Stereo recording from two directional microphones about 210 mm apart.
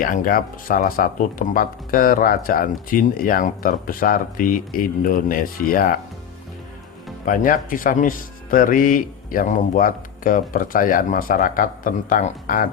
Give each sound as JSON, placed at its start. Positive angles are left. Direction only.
{"t": 0.0, "sound": "speech", "side_deg": 40}
{"t": 7.3, "sound": "speech", "side_deg": 40}